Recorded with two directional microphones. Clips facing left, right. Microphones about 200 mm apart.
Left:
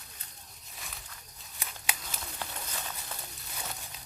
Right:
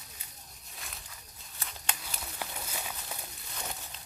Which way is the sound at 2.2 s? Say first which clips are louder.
Even; 10° right (ahead or behind).